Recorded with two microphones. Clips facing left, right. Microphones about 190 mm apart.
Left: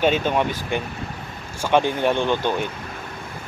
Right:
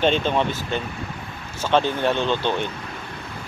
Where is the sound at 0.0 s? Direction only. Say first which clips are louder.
Even; 10° left (ahead or behind).